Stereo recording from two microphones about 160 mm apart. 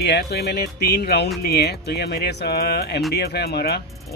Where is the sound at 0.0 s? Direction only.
90° left.